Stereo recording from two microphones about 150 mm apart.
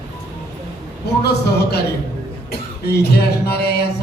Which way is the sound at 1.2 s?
90° left.